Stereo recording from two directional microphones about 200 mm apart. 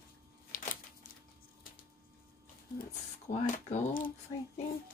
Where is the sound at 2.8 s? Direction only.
40° left (ahead or behind).